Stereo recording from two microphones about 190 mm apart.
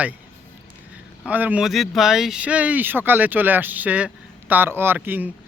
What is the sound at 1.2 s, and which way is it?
Speech, 10° right (ahead or behind).